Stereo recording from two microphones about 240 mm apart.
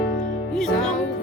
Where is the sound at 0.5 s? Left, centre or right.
Centre.